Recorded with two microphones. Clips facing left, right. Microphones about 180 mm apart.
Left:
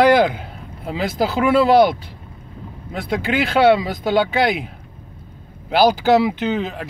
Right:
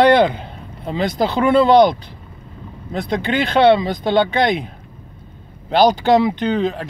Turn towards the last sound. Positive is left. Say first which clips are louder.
# right 3 dB
turn(degrees=5)  # may be behind; listen again after turning